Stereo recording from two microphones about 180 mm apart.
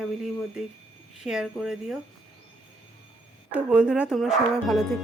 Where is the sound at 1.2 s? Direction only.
5° right (ahead or behind).